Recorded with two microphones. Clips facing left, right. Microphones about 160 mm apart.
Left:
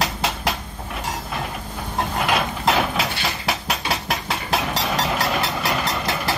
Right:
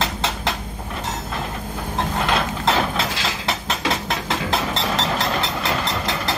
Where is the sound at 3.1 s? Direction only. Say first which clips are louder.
Right 1 dB; 90° right.